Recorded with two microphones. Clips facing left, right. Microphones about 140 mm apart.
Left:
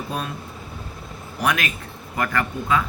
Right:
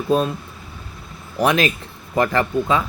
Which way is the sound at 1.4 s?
25° right (ahead or behind).